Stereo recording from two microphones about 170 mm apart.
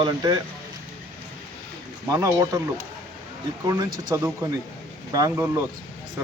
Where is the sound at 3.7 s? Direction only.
20° right (ahead or behind).